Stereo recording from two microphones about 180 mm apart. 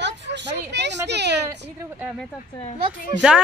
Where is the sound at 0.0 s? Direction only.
75° right (ahead or behind).